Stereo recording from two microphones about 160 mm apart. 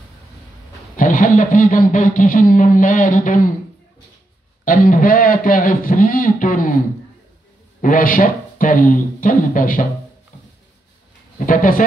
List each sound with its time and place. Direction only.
0.9 s speech: 55° left (ahead or behind)
4.6 s speech: 60° left (ahead or behind)
7.8 s speech: 60° left (ahead or behind)
10.3 s a sound: 55° left (ahead or behind)
11.3 s speech: 55° left (ahead or behind)